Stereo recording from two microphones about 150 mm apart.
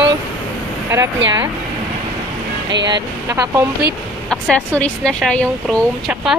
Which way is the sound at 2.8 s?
25° right (ahead or behind).